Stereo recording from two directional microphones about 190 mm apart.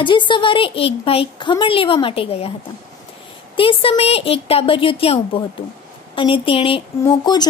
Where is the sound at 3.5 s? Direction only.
30° left (ahead or behind).